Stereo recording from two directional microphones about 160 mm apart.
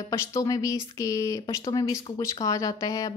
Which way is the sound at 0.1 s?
20° left (ahead or behind).